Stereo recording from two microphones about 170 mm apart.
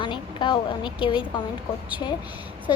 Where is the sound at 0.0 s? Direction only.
30° left (ahead or behind).